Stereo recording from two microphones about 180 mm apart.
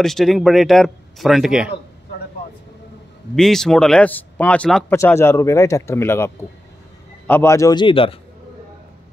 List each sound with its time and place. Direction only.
0.0 s speech: centre (ahead or behind)
3.3 s a man's voice: 5° left (ahead or behind); by 8.2 s 30° left (ahead or behind)